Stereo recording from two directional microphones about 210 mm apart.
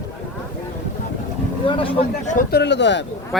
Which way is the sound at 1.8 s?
25° left (ahead or behind).